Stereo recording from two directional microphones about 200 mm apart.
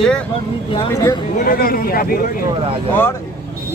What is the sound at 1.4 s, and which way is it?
Speech, 45° left (ahead or behind).